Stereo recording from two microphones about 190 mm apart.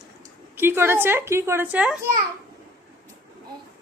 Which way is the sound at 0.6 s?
10° right (ahead or behind).